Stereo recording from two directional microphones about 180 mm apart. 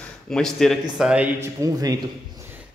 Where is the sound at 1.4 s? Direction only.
20° right (ahead or behind).